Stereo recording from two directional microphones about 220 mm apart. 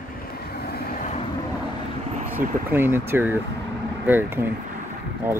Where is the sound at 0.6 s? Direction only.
45° left (ahead or behind).